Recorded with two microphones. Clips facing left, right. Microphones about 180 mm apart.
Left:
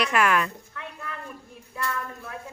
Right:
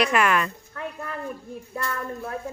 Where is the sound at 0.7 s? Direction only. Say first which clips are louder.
Right 8 dB; 45° right (ahead or behind).